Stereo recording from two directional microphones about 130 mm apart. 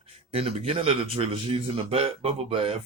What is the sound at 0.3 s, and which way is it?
A man's voice, 50° right (ahead or behind).